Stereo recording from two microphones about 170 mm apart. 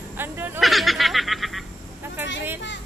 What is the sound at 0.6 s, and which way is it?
Speech, centre (ahead or behind).